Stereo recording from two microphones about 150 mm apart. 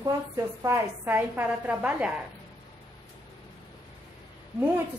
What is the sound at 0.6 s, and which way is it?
A woman's voice, 15° right (ahead or behind).